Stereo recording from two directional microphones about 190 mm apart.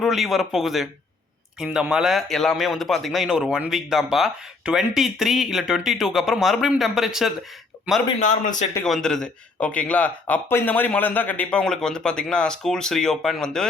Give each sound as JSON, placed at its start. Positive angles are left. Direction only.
{"t": 0.0, "sound": "speech", "side_deg": 0}
{"t": 8.2, "sound": "a man's voice", "side_deg": 40}
{"t": 8.7, "sound": "speech", "side_deg": 5}